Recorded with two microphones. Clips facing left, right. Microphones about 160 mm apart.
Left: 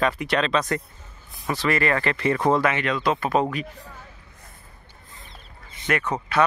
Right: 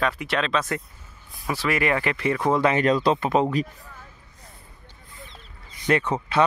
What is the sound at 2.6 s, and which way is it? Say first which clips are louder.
Speech: right 3 dB; 40° right (ahead or behind).